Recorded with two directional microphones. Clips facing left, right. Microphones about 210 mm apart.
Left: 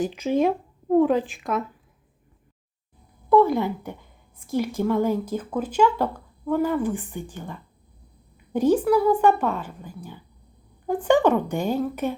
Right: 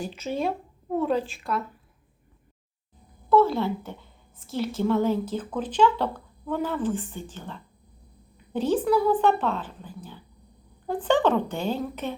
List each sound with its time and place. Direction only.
0.2 s a woman's voice: 15° left (ahead or behind)
3.2 s a woman's voice: 15° left (ahead or behind)